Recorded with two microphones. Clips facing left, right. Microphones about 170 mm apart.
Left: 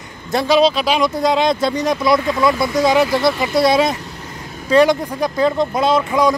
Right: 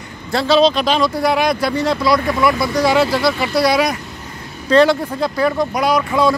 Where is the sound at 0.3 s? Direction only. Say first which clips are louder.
Even; 15° left (ahead or behind).